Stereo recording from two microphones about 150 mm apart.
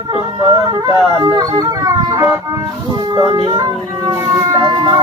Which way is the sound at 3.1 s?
20° right (ahead or behind).